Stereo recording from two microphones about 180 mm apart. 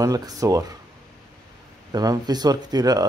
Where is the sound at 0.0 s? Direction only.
20° right (ahead or behind).